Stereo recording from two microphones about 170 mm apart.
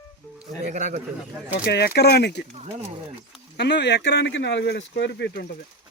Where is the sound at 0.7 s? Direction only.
45° right (ahead or behind).